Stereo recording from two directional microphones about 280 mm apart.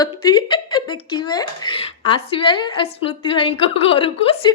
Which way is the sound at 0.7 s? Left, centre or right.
Centre.